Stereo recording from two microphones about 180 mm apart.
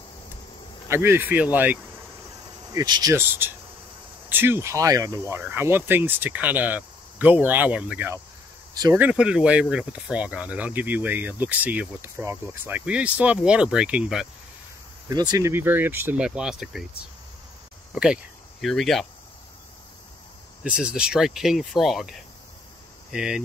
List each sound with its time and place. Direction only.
0.8 s speech: 15° right (ahead or behind)
2.7 s speech: 20° right (ahead or behind); by 14.2 s 5° right (ahead or behind)
15.0 s speech: 20° right (ahead or behind); by 16.8 s centre (ahead or behind)
17.9 s speech: 5° right (ahead or behind)
20.6 s speech: 5° right (ahead or behind)